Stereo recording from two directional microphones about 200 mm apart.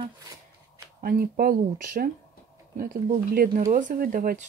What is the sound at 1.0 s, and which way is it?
Speech, 45° right (ahead or behind).